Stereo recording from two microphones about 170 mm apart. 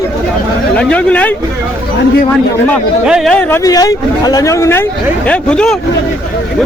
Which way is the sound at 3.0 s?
Centre (ahead or behind).